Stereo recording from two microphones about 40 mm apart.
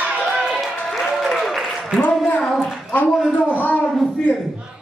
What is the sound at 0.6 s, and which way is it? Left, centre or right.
Applause, centre.